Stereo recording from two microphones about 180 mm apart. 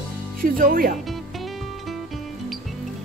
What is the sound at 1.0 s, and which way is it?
Music, centre (ahead or behind).